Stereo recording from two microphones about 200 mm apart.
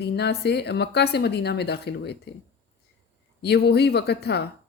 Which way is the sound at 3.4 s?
55° left (ahead or behind).